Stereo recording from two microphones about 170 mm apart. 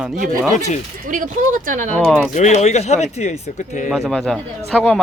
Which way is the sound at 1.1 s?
50° right (ahead or behind).